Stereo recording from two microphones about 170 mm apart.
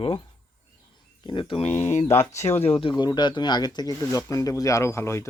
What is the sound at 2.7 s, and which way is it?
Speech, 30° left (ahead or behind).